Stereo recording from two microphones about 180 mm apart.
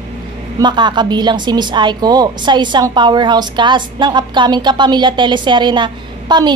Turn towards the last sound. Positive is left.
turn(degrees=-25)  # may be behind; listen again after turning